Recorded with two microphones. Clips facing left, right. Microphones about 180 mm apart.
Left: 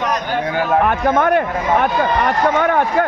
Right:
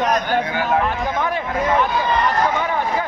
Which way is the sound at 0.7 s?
55° left (ahead or behind).